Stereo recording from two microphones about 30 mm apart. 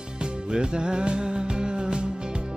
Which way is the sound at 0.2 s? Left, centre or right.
Right.